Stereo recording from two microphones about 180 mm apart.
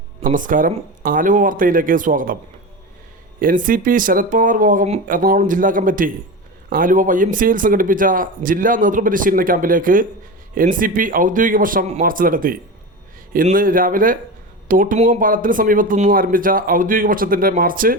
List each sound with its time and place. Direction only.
0.2 s speech: 45° right (ahead or behind)
3.4 s speech: 50° right (ahead or behind)